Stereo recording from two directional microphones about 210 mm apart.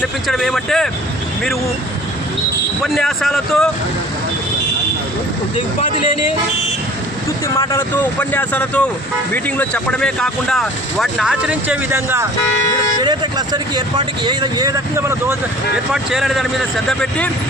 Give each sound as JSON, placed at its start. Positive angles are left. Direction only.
{"t": 0.3, "sound": "speech", "side_deg": 0}
{"t": 2.8, "sound": "speech", "side_deg": 0}
{"t": 5.5, "sound": "speech", "side_deg": 25}
{"t": 7.4, "sound": "speech", "side_deg": 15}
{"t": 15.9, "sound": "speech", "side_deg": 0}